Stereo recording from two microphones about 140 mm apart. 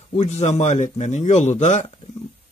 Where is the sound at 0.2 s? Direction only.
50° left (ahead or behind).